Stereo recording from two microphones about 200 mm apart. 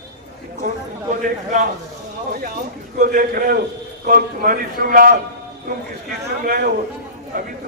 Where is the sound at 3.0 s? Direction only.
45° right (ahead or behind).